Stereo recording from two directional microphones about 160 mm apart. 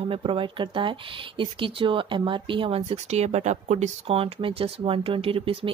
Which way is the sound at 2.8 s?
45° right (ahead or behind).